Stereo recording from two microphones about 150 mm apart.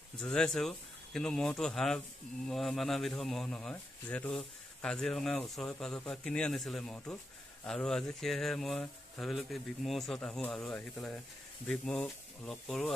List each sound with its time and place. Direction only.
0.2 s speech: 5° left (ahead or behind)